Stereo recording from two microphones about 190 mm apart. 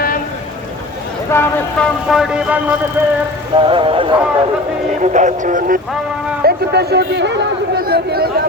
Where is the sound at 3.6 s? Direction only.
30° right (ahead or behind).